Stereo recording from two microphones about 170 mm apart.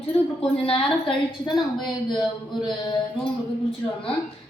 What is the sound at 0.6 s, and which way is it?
A woman's voice, 30° left (ahead or behind).